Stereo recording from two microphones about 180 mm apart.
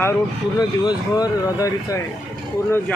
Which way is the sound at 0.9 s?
20° left (ahead or behind).